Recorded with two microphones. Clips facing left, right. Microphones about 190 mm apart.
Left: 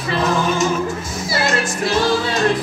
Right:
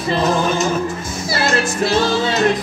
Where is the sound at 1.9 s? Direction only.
25° right (ahead or behind).